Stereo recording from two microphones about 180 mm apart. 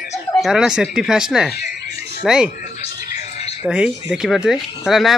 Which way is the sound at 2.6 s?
40° left (ahead or behind).